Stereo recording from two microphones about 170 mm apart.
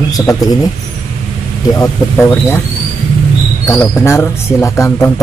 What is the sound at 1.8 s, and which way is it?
Speech, 15° left (ahead or behind).